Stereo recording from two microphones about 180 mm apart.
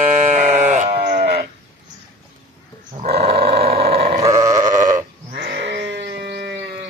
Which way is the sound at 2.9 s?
35° right (ahead or behind).